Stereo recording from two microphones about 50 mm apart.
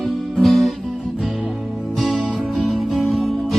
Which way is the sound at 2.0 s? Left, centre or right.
Centre.